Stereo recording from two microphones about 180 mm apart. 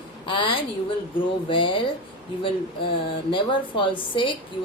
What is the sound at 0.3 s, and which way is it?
A woman's voice, 30° left (ahead or behind).